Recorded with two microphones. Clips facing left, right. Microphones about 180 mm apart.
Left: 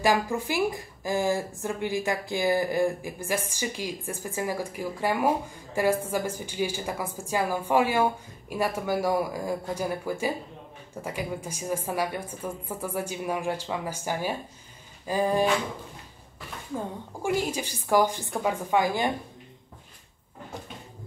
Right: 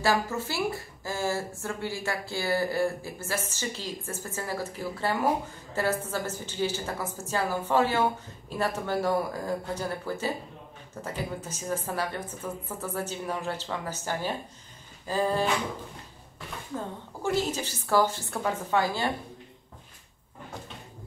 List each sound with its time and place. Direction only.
0.0 s a woman's voice: 15° left (ahead or behind)
16.7 s a woman's voice: 10° left (ahead or behind)